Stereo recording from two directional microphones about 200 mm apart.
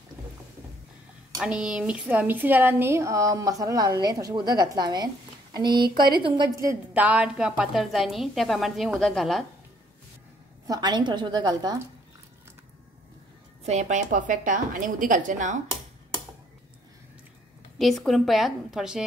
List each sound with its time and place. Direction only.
1.4 s a woman's voice: 5° right (ahead or behind)
10.7 s a woman's voice: 20° right (ahead or behind)
13.7 s a woman's voice: 35° right (ahead or behind)
17.7 s a woman's voice: centre (ahead or behind)